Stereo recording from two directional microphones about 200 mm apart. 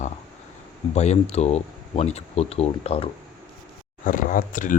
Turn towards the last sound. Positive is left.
turn(degrees=40)  # may be behind; listen again after turning